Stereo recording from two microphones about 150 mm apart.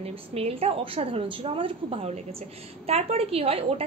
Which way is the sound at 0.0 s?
40° right (ahead or behind).